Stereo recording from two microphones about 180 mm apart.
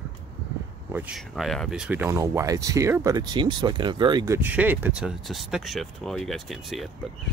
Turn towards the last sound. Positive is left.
turn(degrees=0)  # may be behind; listen again after turning